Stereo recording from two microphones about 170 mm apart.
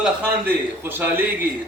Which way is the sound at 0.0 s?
10° right (ahead or behind).